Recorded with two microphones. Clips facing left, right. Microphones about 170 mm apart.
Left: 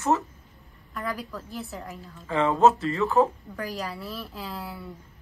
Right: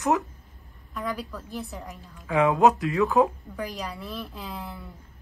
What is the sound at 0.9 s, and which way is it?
Speech, centre (ahead or behind).